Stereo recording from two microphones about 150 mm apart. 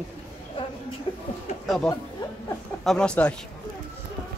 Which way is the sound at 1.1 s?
35° left (ahead or behind).